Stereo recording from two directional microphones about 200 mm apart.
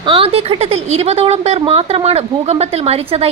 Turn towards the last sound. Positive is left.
turn(degrees=-30)  # may be behind; listen again after turning